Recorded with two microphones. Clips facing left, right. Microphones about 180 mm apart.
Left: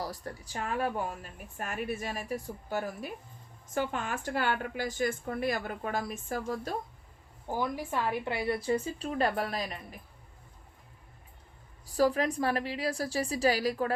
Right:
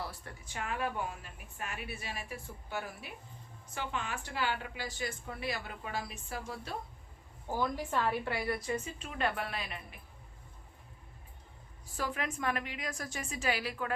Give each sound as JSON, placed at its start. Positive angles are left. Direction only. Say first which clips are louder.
{"t": 0.0, "sound": "a woman's voice", "louder": "left 5 dB", "side_deg": 40}
{"t": 7.4, "sound": "a woman's voice", "louder": "left 1 dB", "side_deg": 15}
{"t": 11.9, "sound": "a woman's voice", "louder": "left 10 dB", "side_deg": 35}